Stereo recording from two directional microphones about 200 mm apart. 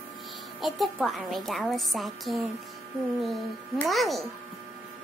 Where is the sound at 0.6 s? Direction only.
Centre (ahead or behind).